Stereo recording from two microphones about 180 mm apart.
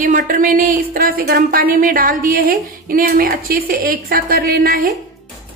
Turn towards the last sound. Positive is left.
turn(degrees=-55)  # may be behind; listen again after turning